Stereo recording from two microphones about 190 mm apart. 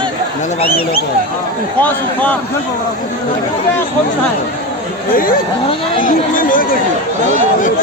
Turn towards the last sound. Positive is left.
turn(degrees=45)  # may be behind; listen again after turning